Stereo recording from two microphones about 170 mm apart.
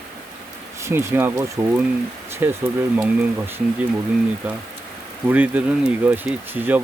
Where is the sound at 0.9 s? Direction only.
15° right (ahead or behind).